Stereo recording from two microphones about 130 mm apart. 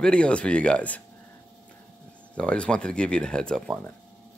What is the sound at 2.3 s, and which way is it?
Speech, 10° left (ahead or behind).